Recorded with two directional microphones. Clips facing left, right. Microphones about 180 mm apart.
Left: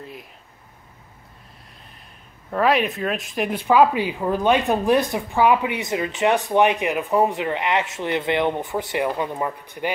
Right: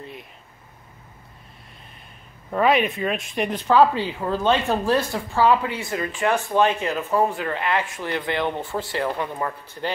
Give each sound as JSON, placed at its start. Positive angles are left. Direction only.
{"t": 0.0, "sound": "speech", "side_deg": 0}
{"t": 2.5, "sound": "speech", "side_deg": 0}